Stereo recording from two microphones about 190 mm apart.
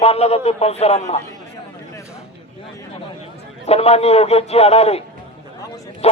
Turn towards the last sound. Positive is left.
turn(degrees=30)  # may be behind; listen again after turning